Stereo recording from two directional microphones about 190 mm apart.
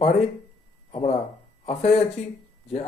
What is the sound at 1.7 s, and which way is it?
Speech, 35° left (ahead or behind).